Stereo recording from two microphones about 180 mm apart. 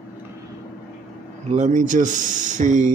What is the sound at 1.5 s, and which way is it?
Speech, 40° right (ahead or behind).